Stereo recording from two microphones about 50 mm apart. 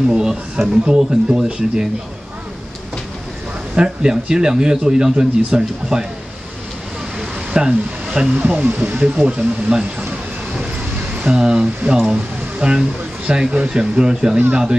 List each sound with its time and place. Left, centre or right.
0.1 s a man's voice: centre
3.7 s a man's voice: centre
7.2 s a sound: centre
8.4 s speech: right
8.6 s speech: right
9.7 s a man's voice: centre
11.1 s a man's voice: centre